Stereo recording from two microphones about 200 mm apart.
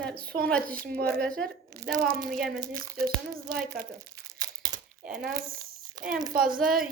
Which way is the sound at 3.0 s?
50° right (ahead or behind).